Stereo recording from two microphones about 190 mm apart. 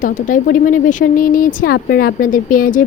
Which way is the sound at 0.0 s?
40° left (ahead or behind).